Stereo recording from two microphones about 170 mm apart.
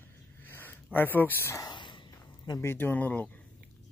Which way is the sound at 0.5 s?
10° left (ahead or behind).